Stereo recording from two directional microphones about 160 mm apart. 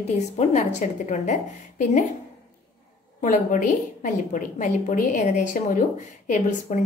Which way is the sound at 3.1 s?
55° left (ahead or behind).